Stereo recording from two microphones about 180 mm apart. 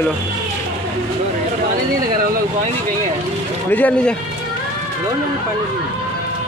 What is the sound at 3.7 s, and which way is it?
Speech, 10° left (ahead or behind).